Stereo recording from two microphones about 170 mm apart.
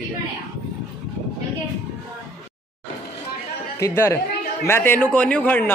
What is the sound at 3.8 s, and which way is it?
A man's voice, 15° left (ahead or behind).